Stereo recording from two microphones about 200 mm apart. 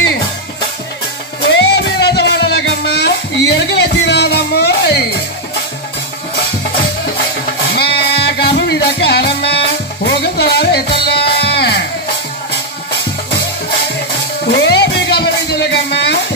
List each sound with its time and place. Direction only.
1.5 s music: 60° left (ahead or behind)
7.7 s music: 55° left (ahead or behind)
14.4 s music: 55° left (ahead or behind)